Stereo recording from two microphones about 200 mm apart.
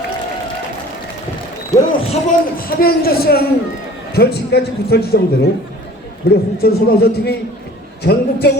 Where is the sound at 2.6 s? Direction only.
50° left (ahead or behind).